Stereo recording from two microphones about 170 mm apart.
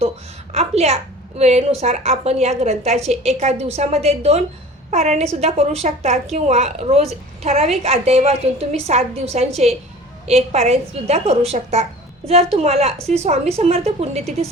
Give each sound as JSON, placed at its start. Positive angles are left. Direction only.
{"t": 0.5, "sound": "a woman's voice", "side_deg": -40}